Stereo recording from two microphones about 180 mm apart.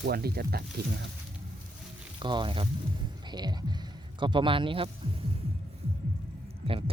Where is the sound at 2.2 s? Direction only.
25° right (ahead or behind).